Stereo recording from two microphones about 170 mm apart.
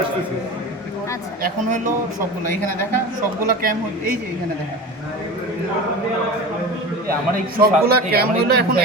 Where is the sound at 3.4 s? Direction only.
55° right (ahead or behind).